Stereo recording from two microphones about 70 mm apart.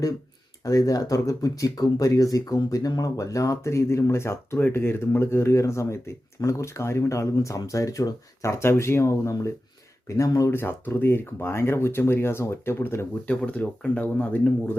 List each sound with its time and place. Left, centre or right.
0.6 s speech: left
10.2 s speech: left
10.5 s speech: left
13.2 s speech: centre